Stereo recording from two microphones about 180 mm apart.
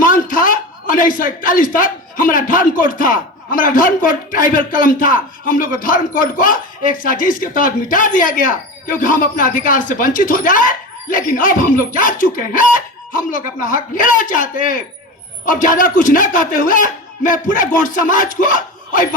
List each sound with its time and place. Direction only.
0.0 s a man's voice: 50° left (ahead or behind)